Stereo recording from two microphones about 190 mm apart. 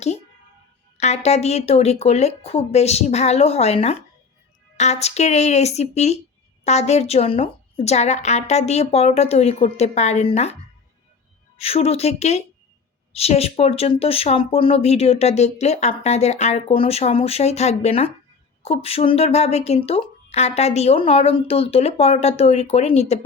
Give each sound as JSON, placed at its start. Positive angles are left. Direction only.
{"t": 0.9, "sound": "speech", "side_deg": 35}
{"t": 11.5, "sound": "speech", "side_deg": 30}